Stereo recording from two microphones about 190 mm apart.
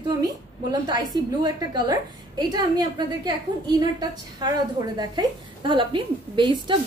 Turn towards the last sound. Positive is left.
turn(degrees=-25)  # may be behind; listen again after turning